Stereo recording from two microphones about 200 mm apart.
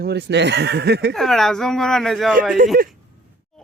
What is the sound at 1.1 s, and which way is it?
Speech, centre (ahead or behind).